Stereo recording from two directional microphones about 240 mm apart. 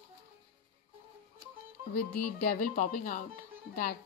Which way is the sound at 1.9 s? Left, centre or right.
Left.